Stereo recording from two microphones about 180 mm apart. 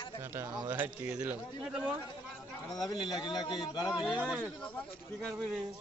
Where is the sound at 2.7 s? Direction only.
25° left (ahead or behind).